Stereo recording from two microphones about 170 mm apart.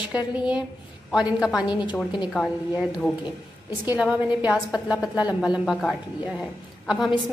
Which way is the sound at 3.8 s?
10° right (ahead or behind).